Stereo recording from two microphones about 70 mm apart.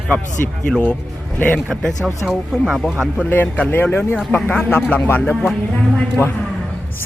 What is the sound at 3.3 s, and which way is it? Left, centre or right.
Speech, left.